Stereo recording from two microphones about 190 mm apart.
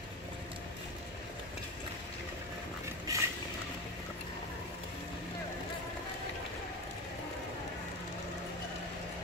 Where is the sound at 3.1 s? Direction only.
15° right (ahead or behind).